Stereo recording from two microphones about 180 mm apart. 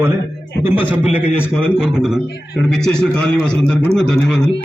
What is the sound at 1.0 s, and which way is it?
A man's voice, 5° right (ahead or behind).